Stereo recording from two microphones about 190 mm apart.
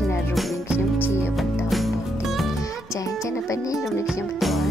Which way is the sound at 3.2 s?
15° left (ahead or behind).